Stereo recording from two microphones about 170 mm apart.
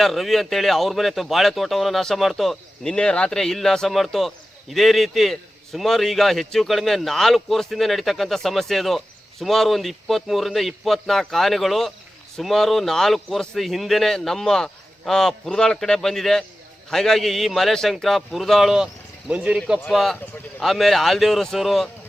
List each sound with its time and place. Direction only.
0.0 s a man's voice: centre (ahead or behind)